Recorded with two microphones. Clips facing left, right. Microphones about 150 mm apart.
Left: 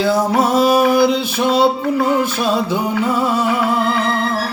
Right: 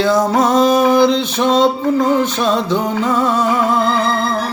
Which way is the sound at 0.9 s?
10° left (ahead or behind).